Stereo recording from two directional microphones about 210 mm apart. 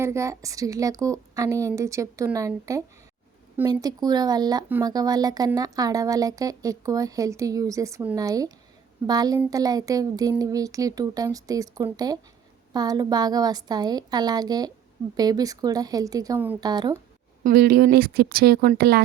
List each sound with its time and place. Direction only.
0.0 s a woman's voice: 15° right (ahead or behind)
17.4 s speech: 45° right (ahead or behind)